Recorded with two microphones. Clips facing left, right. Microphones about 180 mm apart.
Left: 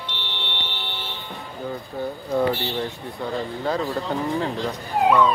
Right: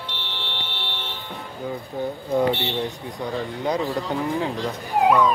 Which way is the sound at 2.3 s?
20° right (ahead or behind).